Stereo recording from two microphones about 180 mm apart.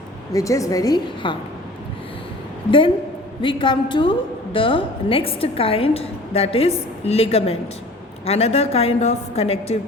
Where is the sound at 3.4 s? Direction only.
25° left (ahead or behind).